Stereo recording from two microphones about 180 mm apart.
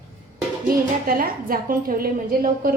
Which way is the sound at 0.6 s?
50° right (ahead or behind).